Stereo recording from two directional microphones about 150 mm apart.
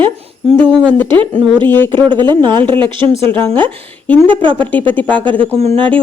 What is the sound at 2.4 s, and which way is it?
Speech, 30° right (ahead or behind).